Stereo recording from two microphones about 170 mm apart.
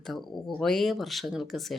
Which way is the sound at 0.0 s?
Centre (ahead or behind).